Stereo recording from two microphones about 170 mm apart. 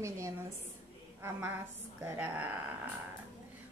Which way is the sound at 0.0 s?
15° right (ahead or behind).